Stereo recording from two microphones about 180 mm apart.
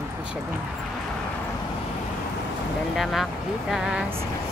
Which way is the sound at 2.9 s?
Centre (ahead or behind).